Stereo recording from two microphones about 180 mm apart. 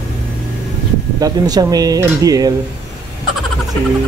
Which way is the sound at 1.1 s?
20° right (ahead or behind).